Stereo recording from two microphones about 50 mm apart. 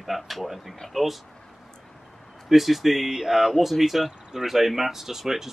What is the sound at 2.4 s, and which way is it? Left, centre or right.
Speech, centre.